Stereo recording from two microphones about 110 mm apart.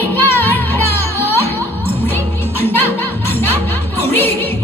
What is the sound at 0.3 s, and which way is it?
Music, 20° left (ahead or behind).